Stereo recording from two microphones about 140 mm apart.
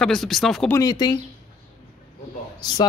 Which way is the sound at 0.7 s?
25° left (ahead or behind).